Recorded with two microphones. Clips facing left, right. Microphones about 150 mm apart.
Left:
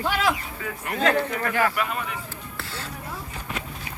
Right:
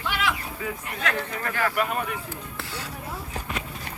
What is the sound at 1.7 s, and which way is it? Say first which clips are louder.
Speech: right 2 dB; 45° right (ahead or behind).